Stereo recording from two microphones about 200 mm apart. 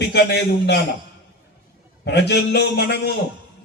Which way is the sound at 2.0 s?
55° left (ahead or behind).